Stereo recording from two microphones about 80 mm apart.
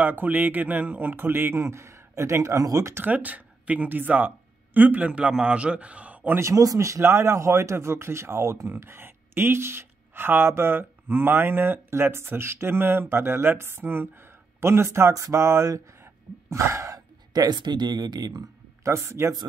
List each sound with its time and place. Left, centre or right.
0.0 s a man's voice: right
2.9 s a man's voice: right
6.4 s speech: right
17.3 s speech: right
18.9 s speech: right